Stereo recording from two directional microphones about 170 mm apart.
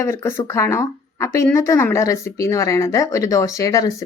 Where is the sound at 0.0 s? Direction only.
15° left (ahead or behind).